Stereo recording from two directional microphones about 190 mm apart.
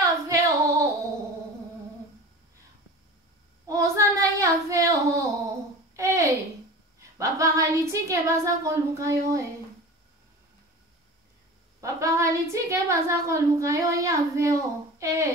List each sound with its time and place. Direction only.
0.0 s female singing: 15° right (ahead or behind)
3.6 s child singing: 15° right (ahead or behind)
5.9 s a sound: 15° right (ahead or behind)
7.0 s speech: 15° right (ahead or behind)
11.8 s a woman's voice: 15° right (ahead or behind)